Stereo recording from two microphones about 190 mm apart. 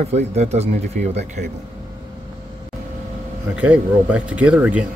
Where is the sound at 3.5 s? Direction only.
5° right (ahead or behind).